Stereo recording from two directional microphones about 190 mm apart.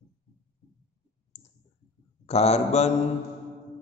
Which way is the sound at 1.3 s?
35° left (ahead or behind).